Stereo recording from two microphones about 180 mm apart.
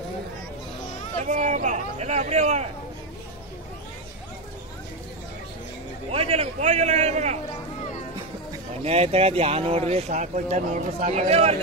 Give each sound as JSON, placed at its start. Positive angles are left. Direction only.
{"t": 1.2, "sound": "speech", "side_deg": -40}
{"t": 6.1, "sound": "speech", "side_deg": -35}
{"t": 8.8, "sound": "speech", "side_deg": -35}